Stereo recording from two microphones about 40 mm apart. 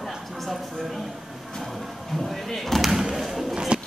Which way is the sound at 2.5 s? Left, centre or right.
Centre.